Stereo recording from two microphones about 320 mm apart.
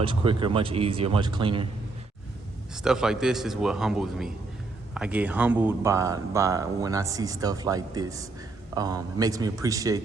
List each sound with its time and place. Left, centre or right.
0.0 s speech: centre
2.7 s a man's voice: centre